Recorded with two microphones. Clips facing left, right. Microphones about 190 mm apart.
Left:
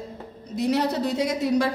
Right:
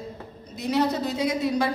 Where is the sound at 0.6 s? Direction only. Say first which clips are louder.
Left 1 dB; 60° left (ahead or behind).